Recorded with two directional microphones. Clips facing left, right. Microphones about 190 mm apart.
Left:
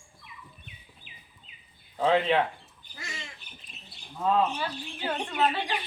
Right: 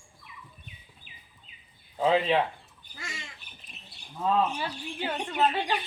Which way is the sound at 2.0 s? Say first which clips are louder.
Even; 5° right (ahead or behind).